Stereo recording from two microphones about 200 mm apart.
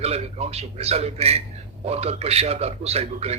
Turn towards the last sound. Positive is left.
turn(degrees=-30)  # may be behind; listen again after turning